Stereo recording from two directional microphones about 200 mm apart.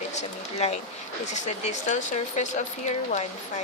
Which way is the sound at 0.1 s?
35° left (ahead or behind).